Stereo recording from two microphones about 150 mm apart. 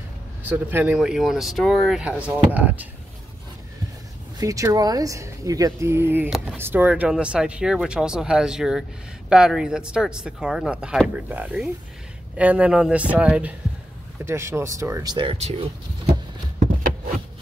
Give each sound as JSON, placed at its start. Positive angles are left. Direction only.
{"t": 0.4, "sound": "speech", "side_deg": -10}
{"t": 4.4, "sound": "speech", "side_deg": -20}
{"t": 15.1, "sound": "speech", "side_deg": -40}